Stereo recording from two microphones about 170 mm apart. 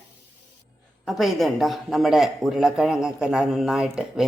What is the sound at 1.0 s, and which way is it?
Speech, centre (ahead or behind).